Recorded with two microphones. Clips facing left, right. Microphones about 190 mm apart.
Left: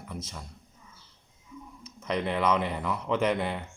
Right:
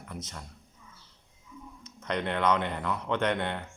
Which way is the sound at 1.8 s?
5° left (ahead or behind).